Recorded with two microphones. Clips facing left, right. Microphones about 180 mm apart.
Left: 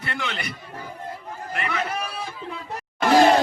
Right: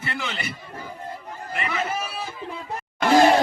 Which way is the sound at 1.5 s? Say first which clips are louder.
Even; 5° right (ahead or behind).